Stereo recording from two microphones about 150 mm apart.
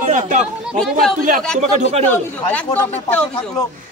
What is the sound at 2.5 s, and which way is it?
Speech, 10° left (ahead or behind).